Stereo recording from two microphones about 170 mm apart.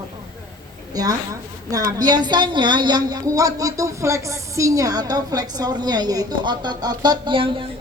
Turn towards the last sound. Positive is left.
turn(degrees=-30)  # may be behind; listen again after turning